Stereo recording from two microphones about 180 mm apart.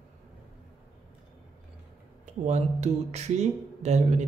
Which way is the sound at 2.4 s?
40° right (ahead or behind).